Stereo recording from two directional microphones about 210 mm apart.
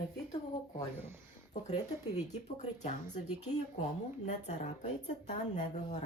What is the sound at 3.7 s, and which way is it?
A woman's voice, 35° left (ahead or behind).